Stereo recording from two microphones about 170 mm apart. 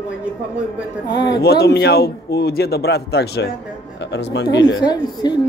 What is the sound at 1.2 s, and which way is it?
A man's voice, 80° left.